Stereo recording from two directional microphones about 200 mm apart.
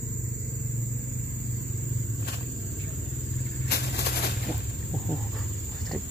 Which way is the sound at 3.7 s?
55° left (ahead or behind).